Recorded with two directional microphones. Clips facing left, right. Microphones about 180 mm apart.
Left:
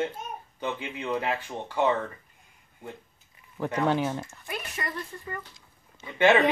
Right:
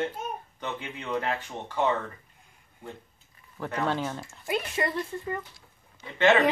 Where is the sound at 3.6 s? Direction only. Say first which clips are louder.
Left 3 dB; 15° left (ahead or behind).